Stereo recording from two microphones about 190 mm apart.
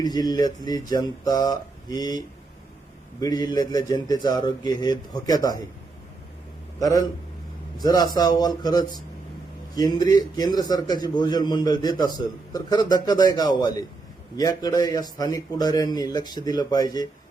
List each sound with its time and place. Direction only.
0.0 s a man's voice: 20° left (ahead or behind)
6.7 s a man's voice: 20° left (ahead or behind)